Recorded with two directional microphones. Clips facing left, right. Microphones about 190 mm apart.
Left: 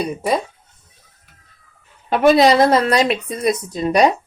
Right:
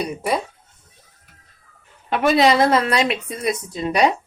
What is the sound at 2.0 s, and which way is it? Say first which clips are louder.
A woman's voice: left 4 dB; 40° left (ahead or behind).